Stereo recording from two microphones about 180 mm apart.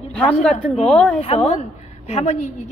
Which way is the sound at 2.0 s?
35° left (ahead or behind).